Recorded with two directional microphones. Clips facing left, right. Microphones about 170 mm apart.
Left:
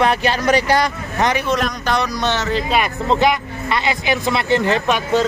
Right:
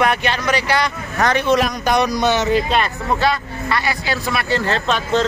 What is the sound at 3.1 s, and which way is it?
Speech, 20° left (ahead or behind).